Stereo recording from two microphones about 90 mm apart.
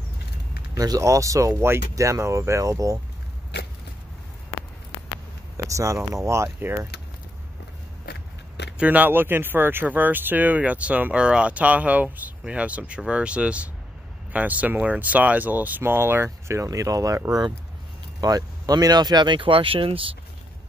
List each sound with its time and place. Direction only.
0.7 s speech: 40° right (ahead or behind)
5.7 s speech: 35° right (ahead or behind)
8.7 s speech: 15° right (ahead or behind); by 20.2 s 85° right